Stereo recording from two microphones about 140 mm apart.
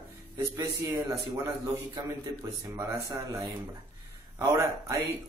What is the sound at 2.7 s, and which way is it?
Speech, 20° right (ahead or behind).